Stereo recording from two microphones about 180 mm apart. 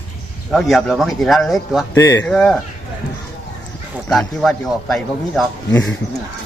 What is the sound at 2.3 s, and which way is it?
Speech, 5° left (ahead or behind).